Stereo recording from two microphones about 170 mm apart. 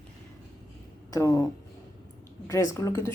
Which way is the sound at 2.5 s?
20° left (ahead or behind).